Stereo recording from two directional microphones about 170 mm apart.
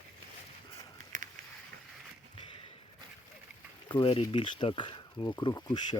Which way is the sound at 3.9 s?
30° left (ahead or behind).